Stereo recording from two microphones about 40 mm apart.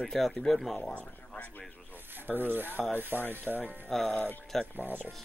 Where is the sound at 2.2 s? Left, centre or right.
Right.